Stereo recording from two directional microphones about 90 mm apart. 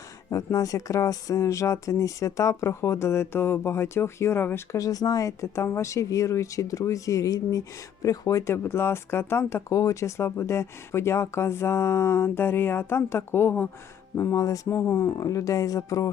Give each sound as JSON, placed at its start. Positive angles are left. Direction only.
{"t": 0.3, "sound": "speech", "side_deg": 40}
{"t": 8.5, "sound": "speech", "side_deg": 25}
{"t": 14.2, "sound": "speech", "side_deg": 35}
{"t": 14.7, "sound": "speech", "side_deg": 30}